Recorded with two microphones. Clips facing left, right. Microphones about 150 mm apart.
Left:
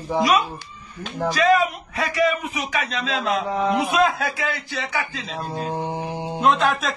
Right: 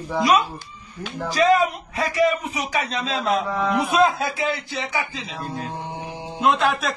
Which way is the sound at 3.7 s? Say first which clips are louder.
Left 2 dB; 30° left (ahead or behind).